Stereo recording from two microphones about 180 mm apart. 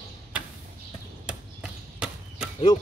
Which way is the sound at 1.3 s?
5° right (ahead or behind).